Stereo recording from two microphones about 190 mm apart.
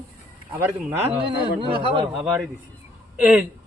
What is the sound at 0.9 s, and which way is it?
A man's voice, 30° right (ahead or behind).